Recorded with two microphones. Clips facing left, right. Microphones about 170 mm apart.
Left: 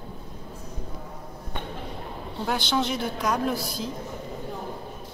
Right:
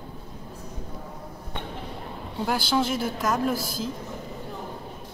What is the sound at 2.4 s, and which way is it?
A woman's voice, 5° right (ahead or behind).